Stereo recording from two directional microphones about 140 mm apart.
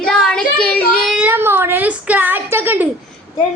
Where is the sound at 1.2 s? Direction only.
15° right (ahead or behind).